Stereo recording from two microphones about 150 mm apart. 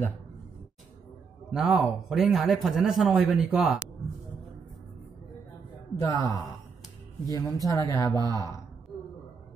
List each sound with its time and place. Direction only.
1.5 s a man's voice: 5° right (ahead or behind)
5.9 s speech: 20° left (ahead or behind)